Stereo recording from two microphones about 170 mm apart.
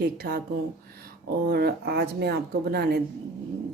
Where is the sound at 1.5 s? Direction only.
70° right (ahead or behind).